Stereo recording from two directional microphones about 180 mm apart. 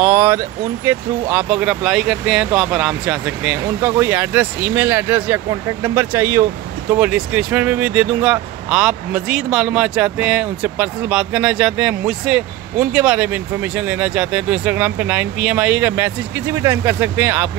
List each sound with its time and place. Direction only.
0.0 s speech: 10° right (ahead or behind)